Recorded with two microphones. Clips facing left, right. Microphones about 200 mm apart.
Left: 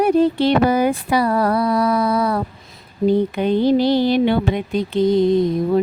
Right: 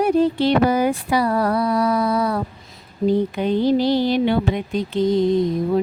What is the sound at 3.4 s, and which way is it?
Speech, 60° left (ahead or behind).